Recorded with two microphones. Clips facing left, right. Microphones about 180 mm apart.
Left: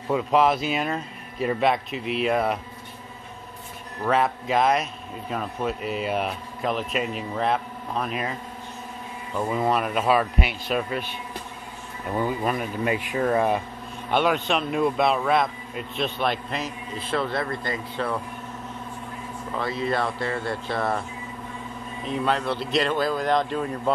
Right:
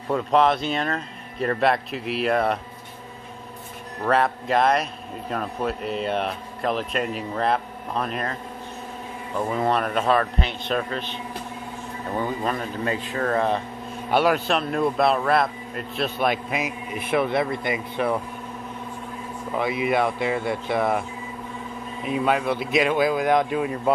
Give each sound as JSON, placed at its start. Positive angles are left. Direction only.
{"t": 0.1, "sound": "speech", "side_deg": 5}
{"t": 4.0, "sound": "speech", "side_deg": 0}
{"t": 9.5, "sound": "a man's voice", "side_deg": 5}
{"t": 12.2, "sound": "a man's voice", "side_deg": 10}
{"t": 14.1, "sound": "a man's voice", "side_deg": -5}
{"t": 19.5, "sound": "a man's voice", "side_deg": -15}
{"t": 22.0, "sound": "a man's voice", "side_deg": -10}